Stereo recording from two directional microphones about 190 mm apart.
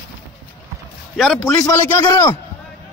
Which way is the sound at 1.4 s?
15° left (ahead or behind).